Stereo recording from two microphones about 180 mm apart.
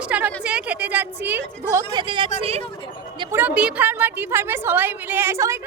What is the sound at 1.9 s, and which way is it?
Speech, 25° right (ahead or behind).